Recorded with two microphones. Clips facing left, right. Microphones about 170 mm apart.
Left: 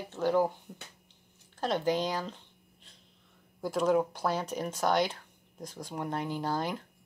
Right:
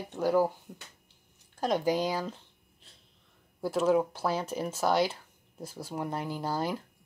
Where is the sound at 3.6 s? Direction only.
5° right (ahead or behind).